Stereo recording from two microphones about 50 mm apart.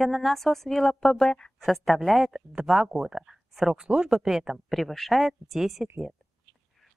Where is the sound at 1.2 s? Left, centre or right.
Centre.